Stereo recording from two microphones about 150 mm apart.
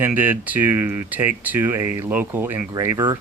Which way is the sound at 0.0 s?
10° right (ahead or behind).